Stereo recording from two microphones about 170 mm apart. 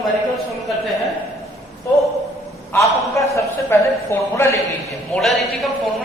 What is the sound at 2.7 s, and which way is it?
A man's voice, 20° left (ahead or behind).